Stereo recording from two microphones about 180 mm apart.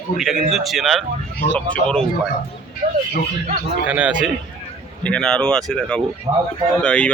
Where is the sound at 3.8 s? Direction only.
10° right (ahead or behind).